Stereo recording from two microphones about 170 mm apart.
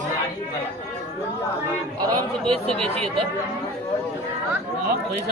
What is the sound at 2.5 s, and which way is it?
Speech, 5° left (ahead or behind).